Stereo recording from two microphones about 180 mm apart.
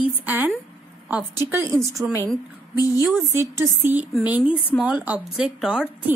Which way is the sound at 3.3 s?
15° right (ahead or behind).